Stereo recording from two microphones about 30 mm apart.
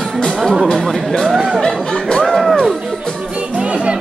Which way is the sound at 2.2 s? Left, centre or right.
Centre.